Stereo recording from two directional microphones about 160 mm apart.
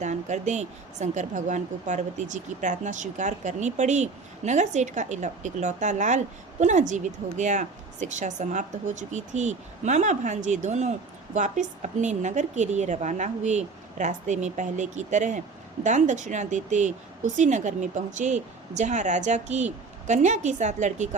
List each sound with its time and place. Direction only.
0.0 s a woman's voice: 45° right (ahead or behind)